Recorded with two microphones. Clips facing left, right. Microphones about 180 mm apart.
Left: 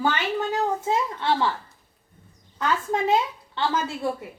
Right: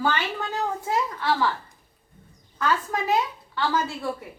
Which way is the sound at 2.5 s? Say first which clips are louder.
Left 1 dB; 25° left (ahead or behind).